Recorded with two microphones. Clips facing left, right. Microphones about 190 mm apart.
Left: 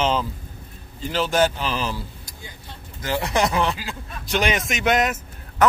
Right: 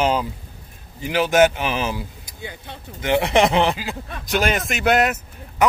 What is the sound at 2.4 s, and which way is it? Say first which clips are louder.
Speech: right 9 dB; 65° right (ahead or behind).